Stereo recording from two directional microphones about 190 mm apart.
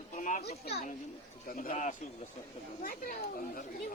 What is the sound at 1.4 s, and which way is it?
Speech, 50° left (ahead or behind).